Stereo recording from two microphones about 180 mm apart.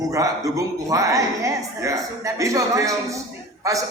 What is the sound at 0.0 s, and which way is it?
A woman's voice, 20° right (ahead or behind).